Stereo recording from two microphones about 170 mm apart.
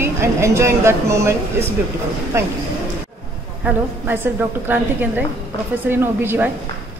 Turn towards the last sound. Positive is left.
turn(degrees=-10)  # may be behind; listen again after turning